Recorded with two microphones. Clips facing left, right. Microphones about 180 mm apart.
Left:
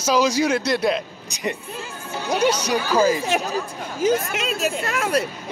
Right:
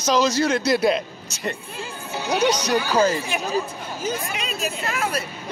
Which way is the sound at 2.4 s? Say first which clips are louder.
Even; 10° left (ahead or behind).